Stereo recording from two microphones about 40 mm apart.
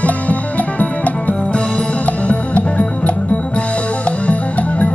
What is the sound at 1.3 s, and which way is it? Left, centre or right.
Music, left.